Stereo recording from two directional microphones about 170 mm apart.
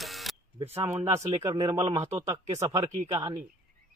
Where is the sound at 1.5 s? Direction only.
25° right (ahead or behind).